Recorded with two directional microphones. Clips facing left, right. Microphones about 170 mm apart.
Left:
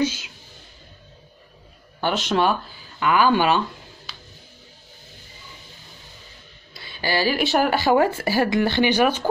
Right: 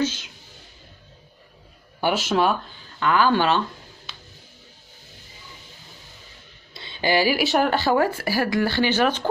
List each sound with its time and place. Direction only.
0.0 s music: 10° left (ahead or behind)
2.0 s speech: 10° right (ahead or behind)
3.0 s speech: 10° left (ahead or behind)
6.7 s a sound: 25° right (ahead or behind)
7.3 s speech: centre (ahead or behind)